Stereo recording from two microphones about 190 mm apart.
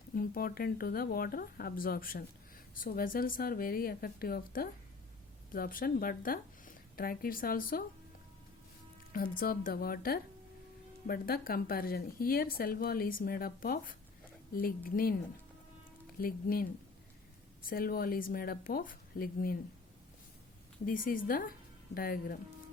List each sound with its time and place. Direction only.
0.1 s speech: 50° left (ahead or behind)
9.1 s speech: 50° left (ahead or behind)
16.2 s speech: 50° left (ahead or behind)
20.8 s speech: 45° left (ahead or behind)